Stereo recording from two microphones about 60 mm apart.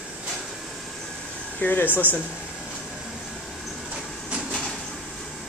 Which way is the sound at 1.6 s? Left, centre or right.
Left.